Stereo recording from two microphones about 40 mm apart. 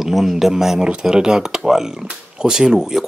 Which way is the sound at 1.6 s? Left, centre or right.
Centre.